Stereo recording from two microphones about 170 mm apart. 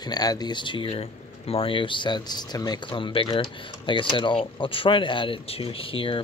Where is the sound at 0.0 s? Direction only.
25° left (ahead or behind).